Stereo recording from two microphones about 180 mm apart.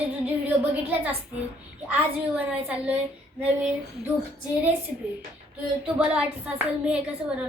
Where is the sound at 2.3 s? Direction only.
10° right (ahead or behind).